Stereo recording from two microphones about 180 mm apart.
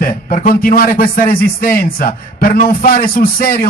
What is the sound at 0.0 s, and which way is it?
Speech, 50° left (ahead or behind).